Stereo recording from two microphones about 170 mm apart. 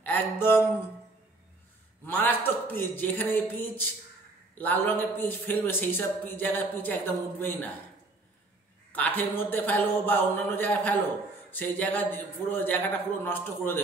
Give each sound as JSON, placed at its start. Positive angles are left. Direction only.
{"t": 0.0, "sound": "music", "side_deg": 10}
{"t": 2.0, "sound": "a man's voice", "side_deg": 10}
{"t": 8.9, "sound": "a man's voice", "side_deg": 10}